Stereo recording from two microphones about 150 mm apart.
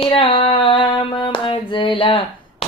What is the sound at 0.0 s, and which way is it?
Hands, 35° left (ahead or behind).